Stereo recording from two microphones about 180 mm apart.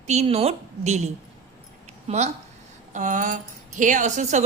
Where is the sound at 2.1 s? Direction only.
40° right (ahead or behind).